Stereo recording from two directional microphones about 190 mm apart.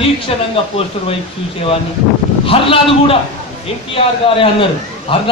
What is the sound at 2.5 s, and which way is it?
A man's voice, 30° left (ahead or behind).